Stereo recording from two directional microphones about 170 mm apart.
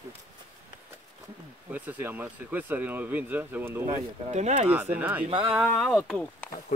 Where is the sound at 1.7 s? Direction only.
10° right (ahead or behind).